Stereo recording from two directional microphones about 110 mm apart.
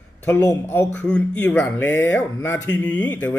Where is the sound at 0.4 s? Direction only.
25° left (ahead or behind).